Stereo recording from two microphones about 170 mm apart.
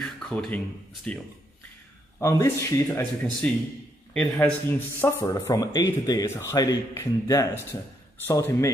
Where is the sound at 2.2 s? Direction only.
15° left (ahead or behind).